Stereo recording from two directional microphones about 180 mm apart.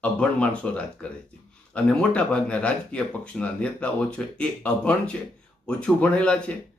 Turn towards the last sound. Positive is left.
turn(degrees=5)  # may be behind; listen again after turning